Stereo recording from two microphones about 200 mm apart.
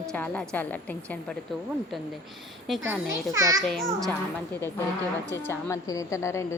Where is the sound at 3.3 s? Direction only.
15° right (ahead or behind).